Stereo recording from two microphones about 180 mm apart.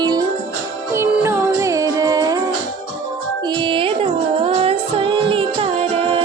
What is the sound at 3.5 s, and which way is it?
Music, 30° right (ahead or behind).